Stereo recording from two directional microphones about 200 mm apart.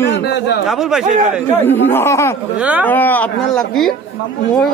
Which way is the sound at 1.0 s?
35° right (ahead or behind).